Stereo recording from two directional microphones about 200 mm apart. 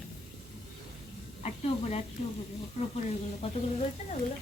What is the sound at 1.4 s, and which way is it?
Speech, 30° left (ahead or behind).